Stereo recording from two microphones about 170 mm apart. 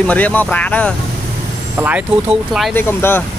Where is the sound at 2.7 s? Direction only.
10° left (ahead or behind).